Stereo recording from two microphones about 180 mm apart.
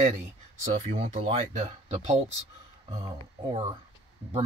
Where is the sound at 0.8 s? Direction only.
35° right (ahead or behind).